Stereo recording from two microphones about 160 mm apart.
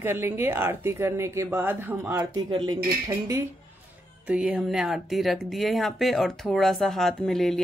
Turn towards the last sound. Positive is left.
turn(degrees=0)  # may be behind; listen again after turning